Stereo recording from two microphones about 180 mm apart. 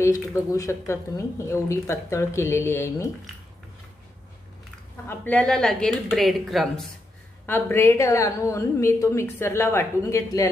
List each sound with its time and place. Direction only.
0.0 s speech: 15° left (ahead or behind)
5.0 s speech: 10° left (ahead or behind)
7.4 s speech: 10° left (ahead or behind)